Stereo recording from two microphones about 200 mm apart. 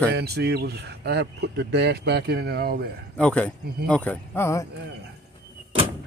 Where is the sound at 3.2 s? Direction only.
5° left (ahead or behind).